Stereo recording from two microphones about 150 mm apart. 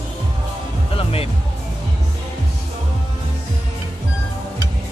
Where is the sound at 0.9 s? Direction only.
40° left (ahead or behind).